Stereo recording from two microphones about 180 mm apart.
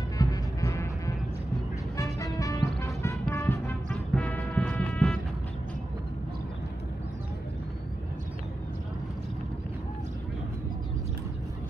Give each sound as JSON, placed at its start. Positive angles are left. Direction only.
{"t": 0.2, "sound": "music", "side_deg": 20}
{"t": 2.8, "sound": "a sound", "side_deg": 15}
{"t": 3.9, "sound": "music", "side_deg": 5}